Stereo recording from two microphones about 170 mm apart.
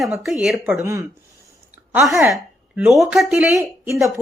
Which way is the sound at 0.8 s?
15° right (ahead or behind).